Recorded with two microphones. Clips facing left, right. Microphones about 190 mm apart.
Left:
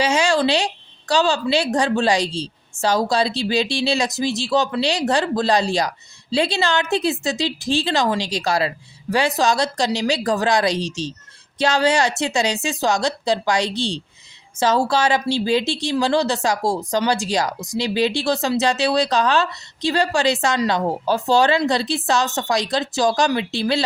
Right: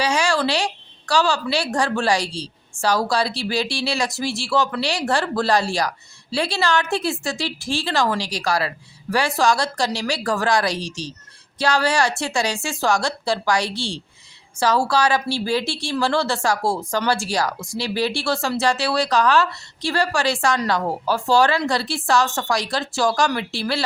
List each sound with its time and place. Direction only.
0.0 s speech: 20° left (ahead or behind)